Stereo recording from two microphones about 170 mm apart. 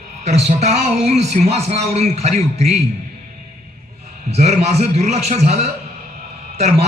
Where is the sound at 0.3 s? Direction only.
40° right (ahead or behind).